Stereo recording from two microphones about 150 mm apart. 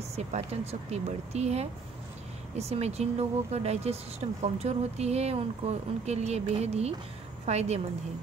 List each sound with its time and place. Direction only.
0.1 s speech: 45° right (ahead or behind)